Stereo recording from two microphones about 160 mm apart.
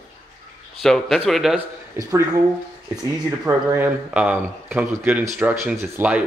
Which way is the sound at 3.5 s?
15° right (ahead or behind).